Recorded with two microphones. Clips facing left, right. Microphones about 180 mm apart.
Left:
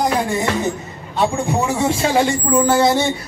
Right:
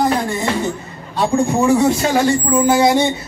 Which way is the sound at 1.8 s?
30° left (ahead or behind).